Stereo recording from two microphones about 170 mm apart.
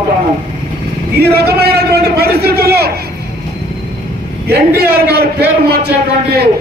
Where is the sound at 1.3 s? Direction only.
65° right (ahead or behind).